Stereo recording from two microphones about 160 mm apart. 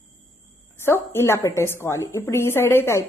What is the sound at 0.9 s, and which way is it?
A woman's voice, 15° left (ahead or behind).